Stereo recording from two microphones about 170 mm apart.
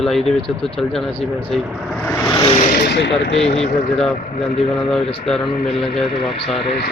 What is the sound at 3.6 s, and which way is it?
Speech, centre (ahead or behind).